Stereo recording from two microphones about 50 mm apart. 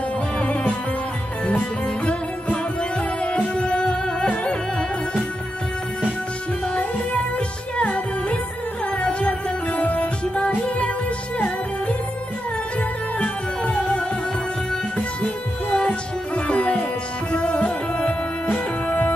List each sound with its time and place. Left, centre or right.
0.4 s music: left
2.5 s music: left
6.7 s music: left
13.2 s music: left